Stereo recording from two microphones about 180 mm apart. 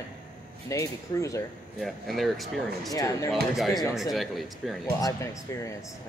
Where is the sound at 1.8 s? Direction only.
Centre (ahead or behind).